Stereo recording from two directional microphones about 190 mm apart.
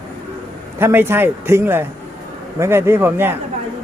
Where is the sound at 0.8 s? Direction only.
10° right (ahead or behind).